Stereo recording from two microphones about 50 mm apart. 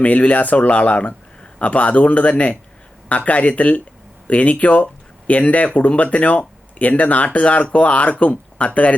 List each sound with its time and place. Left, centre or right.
0.0 s speech: left